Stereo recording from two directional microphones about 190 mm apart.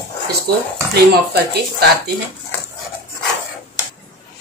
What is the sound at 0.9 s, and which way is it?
Speech, 55° right (ahead or behind).